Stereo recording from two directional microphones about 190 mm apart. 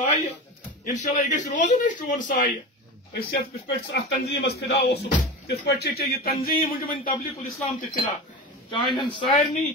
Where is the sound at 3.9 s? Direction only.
60° left (ahead or behind).